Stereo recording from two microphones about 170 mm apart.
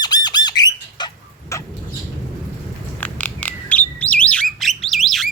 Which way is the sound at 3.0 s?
10° left (ahead or behind).